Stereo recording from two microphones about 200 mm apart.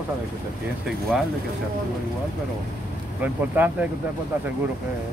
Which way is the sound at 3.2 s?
5° right (ahead or behind).